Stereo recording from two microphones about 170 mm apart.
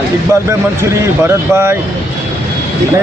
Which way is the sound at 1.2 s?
15° right (ahead or behind).